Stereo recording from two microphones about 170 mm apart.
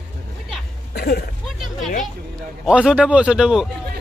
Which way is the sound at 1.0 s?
60° left (ahead or behind).